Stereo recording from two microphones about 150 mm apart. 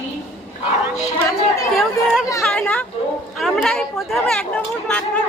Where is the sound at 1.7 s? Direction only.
Centre (ahead or behind).